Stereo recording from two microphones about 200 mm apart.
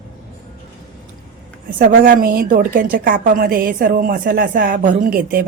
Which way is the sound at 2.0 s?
45° right (ahead or behind).